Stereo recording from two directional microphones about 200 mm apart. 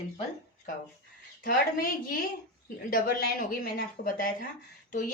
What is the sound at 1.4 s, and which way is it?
Speech, 45° left (ahead or behind).